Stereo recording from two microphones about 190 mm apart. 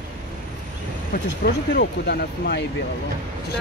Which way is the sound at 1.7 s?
60° left (ahead or behind).